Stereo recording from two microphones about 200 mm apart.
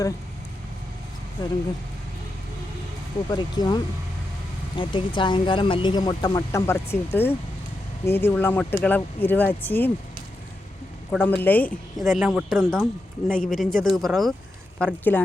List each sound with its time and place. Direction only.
1.4 s speech: 20° left (ahead or behind)
3.2 s speech: 20° left (ahead or behind)
4.8 s speech: 25° left (ahead or behind)
11.1 s speech: 10° left (ahead or behind)